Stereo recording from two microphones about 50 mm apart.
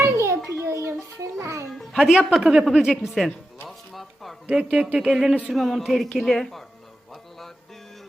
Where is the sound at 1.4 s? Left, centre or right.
Right.